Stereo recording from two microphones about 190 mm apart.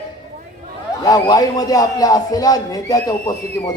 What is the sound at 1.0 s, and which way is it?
Speech, 20° left (ahead or behind).